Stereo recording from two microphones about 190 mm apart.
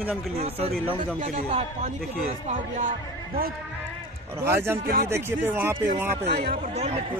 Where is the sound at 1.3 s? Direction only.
40° right (ahead or behind).